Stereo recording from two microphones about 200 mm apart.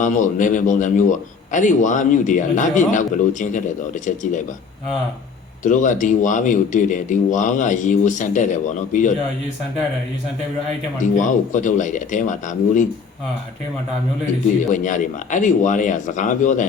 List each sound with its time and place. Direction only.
0.0 s a man's voice: 40° left (ahead or behind)
5.6 s a man's voice: 40° left (ahead or behind)
11.0 s a man's voice: 40° left (ahead or behind)
14.6 s a man's voice: 40° left (ahead or behind)